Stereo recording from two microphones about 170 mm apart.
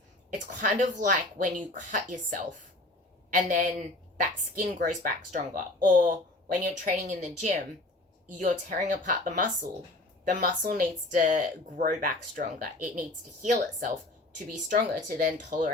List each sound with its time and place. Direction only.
0.3 s a man's voice: 50° right (ahead or behind)